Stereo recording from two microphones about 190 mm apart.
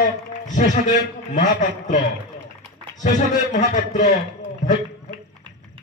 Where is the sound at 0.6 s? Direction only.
40° left (ahead or behind).